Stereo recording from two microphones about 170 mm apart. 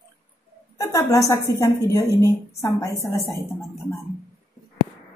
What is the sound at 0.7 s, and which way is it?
A woman's voice, 20° left (ahead or behind).